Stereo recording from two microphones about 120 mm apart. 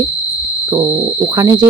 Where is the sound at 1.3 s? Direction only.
25° right (ahead or behind).